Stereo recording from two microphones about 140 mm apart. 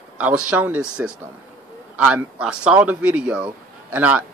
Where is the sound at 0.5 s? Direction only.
10° right (ahead or behind).